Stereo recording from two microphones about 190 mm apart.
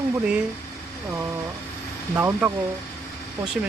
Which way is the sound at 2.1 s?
10° right (ahead or behind).